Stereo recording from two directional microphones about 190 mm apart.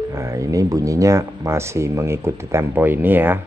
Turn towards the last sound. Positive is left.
turn(degrees=-10)  # may be behind; listen again after turning